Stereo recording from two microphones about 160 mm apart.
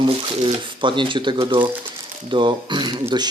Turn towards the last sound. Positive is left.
turn(degrees=-30)  # may be behind; listen again after turning